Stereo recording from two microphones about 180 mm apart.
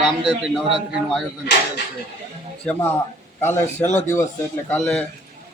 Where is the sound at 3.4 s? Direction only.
10° left (ahead or behind).